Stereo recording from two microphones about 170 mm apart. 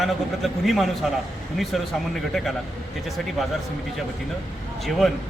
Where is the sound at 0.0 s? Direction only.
Centre (ahead or behind).